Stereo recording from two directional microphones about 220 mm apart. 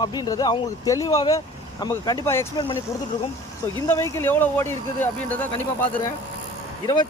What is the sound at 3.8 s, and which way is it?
Speech, 15° left (ahead or behind).